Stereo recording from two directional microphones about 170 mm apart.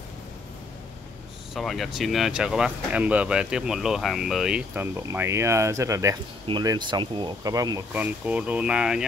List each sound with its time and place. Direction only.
1.5 s speech: centre (ahead or behind); by 7.8 s 20° right (ahead or behind)
7.9 s speech: 10° right (ahead or behind)